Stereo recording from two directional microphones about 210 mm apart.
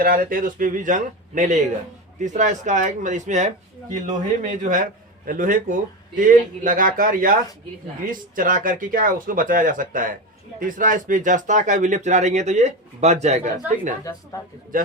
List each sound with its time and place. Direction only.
0.0 s speech: 45° right (ahead or behind)